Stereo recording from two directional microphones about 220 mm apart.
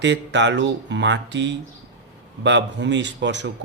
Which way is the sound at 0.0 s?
55° right (ahead or behind).